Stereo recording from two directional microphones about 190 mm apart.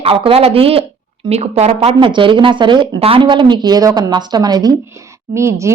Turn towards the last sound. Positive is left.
turn(degrees=-15)  # may be behind; listen again after turning